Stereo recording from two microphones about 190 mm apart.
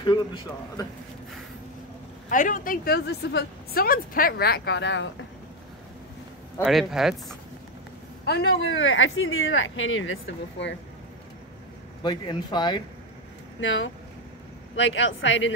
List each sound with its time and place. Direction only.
0.0 s a man's voice: 25° left (ahead or behind)
2.2 s a woman's voice: 45° left (ahead or behind); by 5.0 s 70° left (ahead or behind)
6.6 s speech: centre (ahead or behind)
8.3 s speech: 60° left (ahead or behind); by 10.8 s 80° left
12.0 s a man's voice: 25° left (ahead or behind)
13.6 s a woman's voice: 80° left